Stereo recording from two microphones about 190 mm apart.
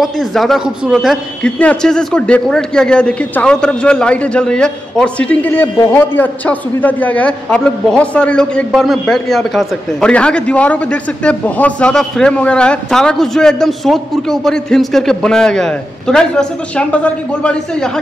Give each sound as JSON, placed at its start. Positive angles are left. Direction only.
{"t": 0.0, "sound": "a man's voice", "side_deg": 0}